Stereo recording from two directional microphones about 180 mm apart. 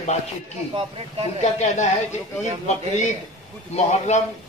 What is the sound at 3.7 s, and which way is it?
Speech, 40° left (ahead or behind).